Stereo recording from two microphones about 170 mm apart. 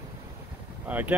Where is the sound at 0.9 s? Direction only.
10° right (ahead or behind).